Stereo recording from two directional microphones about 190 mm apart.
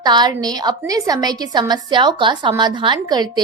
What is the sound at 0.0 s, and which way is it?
A woman's voice, 20° right (ahead or behind).